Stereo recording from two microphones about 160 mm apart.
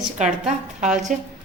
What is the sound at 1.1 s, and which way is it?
Speech, 50° right (ahead or behind).